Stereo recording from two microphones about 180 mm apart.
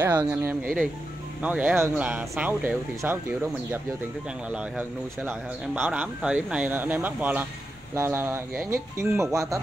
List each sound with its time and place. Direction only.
0.0 s speech: 10° right (ahead or behind)